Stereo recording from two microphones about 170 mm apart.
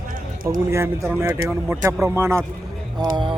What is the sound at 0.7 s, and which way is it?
Speech, 15° right (ahead or behind).